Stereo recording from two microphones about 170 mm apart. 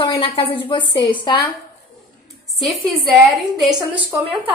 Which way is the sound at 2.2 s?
Centre (ahead or behind).